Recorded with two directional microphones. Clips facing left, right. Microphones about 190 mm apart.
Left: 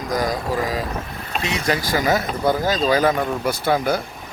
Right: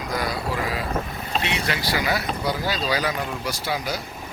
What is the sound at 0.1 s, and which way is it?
Speech, 45° left (ahead or behind).